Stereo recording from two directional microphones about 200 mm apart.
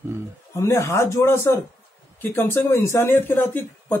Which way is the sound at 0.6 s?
15° left (ahead or behind).